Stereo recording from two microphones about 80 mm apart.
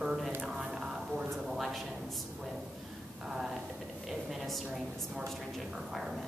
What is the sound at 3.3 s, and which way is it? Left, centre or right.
Speech, centre.